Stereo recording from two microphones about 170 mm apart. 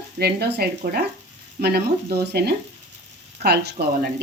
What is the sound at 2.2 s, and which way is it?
Speech, 75° right (ahead or behind).